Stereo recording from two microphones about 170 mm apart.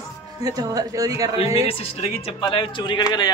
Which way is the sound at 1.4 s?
35° left (ahead or behind).